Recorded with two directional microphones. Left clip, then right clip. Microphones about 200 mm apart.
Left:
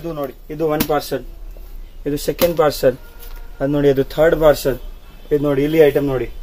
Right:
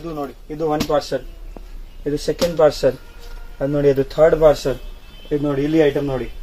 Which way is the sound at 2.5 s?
40° left (ahead or behind).